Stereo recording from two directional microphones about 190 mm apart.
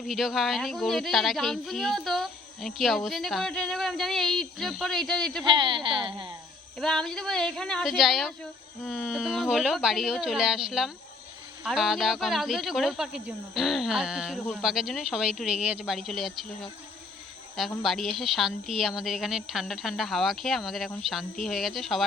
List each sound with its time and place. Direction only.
0.1 s speech: centre (ahead or behind)
5.5 s a woman's voice: 25° right (ahead or behind)
6.7 s speech: centre (ahead or behind)
17.8 s speech: centre (ahead or behind)